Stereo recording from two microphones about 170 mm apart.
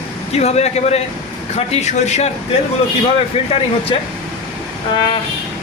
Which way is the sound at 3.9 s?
30° left (ahead or behind).